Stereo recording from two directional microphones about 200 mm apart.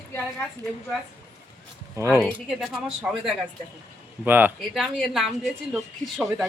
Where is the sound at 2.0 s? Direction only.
15° right (ahead or behind).